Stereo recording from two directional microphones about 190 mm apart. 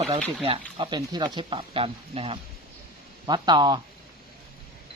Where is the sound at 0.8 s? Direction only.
25° right (ahead or behind).